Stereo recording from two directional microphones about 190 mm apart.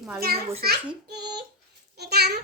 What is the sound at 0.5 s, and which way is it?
Speech, 55° right (ahead or behind).